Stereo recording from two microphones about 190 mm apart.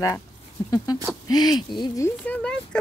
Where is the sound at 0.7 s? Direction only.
20° left (ahead or behind).